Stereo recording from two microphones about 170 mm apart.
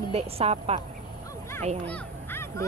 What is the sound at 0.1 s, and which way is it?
Speech, 35° right (ahead or behind).